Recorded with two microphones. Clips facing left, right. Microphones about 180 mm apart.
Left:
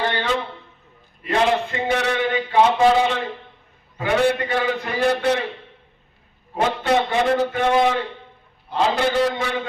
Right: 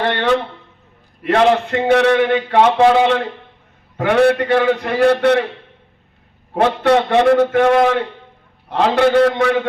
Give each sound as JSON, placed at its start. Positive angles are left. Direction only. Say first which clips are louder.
{"t": 0.1, "sound": "a sound", "louder": "right 7 dB", "side_deg": -70}
{"t": 1.2, "sound": "a man's voice", "louder": "right 6 dB", "side_deg": -70}
{"t": 6.5, "sound": "a man's voice", "louder": "right 6 dB", "side_deg": -65}